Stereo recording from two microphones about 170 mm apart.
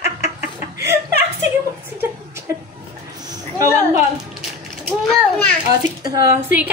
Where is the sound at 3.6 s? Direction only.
15° right (ahead or behind).